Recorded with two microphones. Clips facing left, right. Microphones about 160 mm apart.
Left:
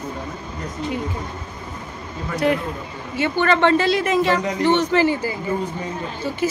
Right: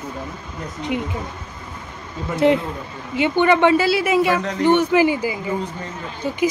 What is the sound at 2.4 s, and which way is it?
Speech, 25° right (ahead or behind).